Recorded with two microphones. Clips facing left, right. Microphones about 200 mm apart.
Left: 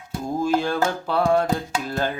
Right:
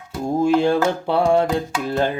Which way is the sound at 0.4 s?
25° right (ahead or behind).